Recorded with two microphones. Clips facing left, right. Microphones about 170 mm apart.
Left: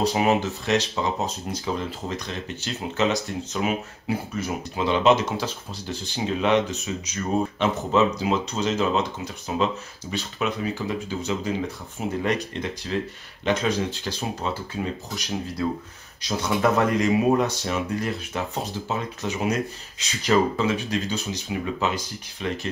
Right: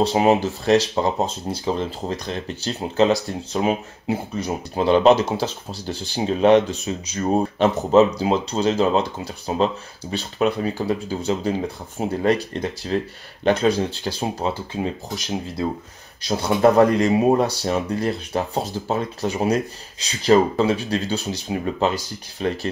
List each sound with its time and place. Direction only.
0.0 s speech: 30° right (ahead or behind)